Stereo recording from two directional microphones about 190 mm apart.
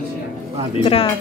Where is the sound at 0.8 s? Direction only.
30° left (ahead or behind).